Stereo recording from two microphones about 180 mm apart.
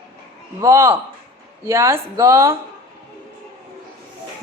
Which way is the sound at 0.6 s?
15° right (ahead or behind).